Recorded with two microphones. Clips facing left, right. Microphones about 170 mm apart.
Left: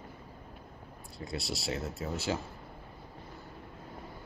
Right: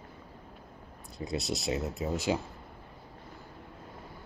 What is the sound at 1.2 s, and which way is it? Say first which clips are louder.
Speech: right 4 dB; 20° right (ahead or behind).